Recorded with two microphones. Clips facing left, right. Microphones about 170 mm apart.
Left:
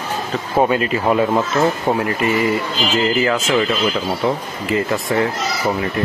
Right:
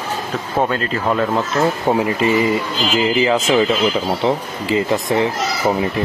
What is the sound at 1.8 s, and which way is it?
Speech, 15° right (ahead or behind).